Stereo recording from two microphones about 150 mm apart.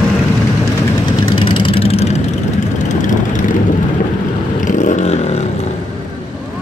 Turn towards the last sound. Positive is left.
turn(degrees=45)  # may be behind; listen again after turning